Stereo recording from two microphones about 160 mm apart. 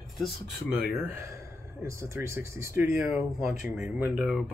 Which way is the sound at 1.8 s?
15° right (ahead or behind).